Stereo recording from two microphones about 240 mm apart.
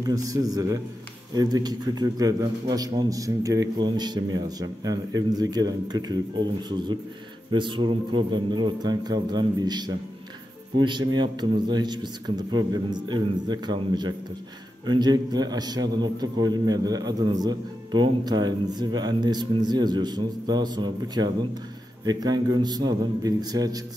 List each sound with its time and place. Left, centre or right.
0.0 s a man's voice: centre
7.5 s a man's voice: centre